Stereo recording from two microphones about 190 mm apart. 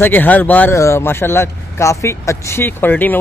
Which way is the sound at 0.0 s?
10° left (ahead or behind).